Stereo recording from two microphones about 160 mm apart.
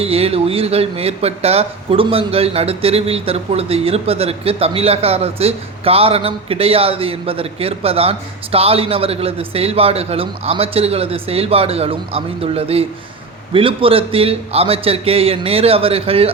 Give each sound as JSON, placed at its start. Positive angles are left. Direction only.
{"t": 0.0, "sound": "speech", "side_deg": -40}